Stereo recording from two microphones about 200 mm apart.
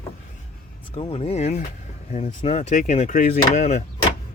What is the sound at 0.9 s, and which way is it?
Speech, 30° left (ahead or behind).